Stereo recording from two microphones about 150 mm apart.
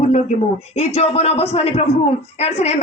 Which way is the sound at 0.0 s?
50° left (ahead or behind).